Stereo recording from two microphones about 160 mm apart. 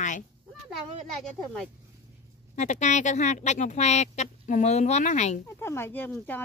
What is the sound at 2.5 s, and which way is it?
Speech, 45° left (ahead or behind).